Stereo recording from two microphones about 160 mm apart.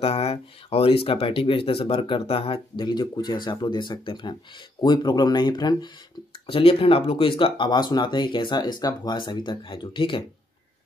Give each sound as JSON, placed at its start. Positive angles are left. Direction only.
{"t": 0.0, "sound": "speech", "side_deg": 40}